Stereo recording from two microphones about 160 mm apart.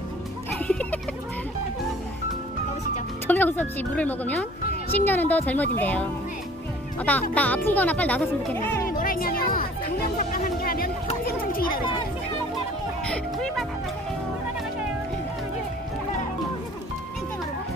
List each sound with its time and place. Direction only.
0.6 s music: 10° left (ahead or behind)
3.3 s speech: 10° left (ahead or behind)
8.8 s music: 60° left (ahead or behind)
11.2 s children playing: 65° left (ahead or behind)
13.0 s music: 5° left (ahead or behind)